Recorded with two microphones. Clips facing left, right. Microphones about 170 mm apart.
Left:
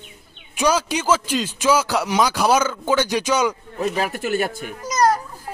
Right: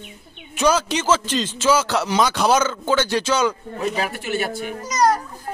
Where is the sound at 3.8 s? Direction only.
45° left (ahead or behind).